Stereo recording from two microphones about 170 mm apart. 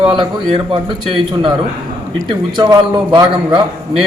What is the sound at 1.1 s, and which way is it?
Speech, 30° right (ahead or behind).